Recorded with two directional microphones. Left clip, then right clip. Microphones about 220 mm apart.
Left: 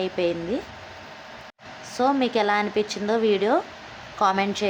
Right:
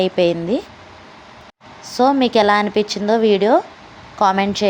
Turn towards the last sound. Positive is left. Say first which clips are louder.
# right 6 dB
turn(degrees=-20)  # may be behind; listen again after turning